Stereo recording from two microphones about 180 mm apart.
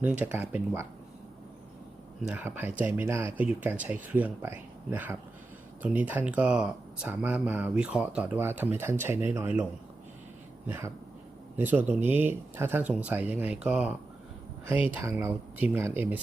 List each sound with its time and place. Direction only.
0.0 s speech: 5° right (ahead or behind)
2.2 s speech: 10° right (ahead or behind)
10.7 s speech: 15° right (ahead or behind)
14.9 s speech: 15° right (ahead or behind)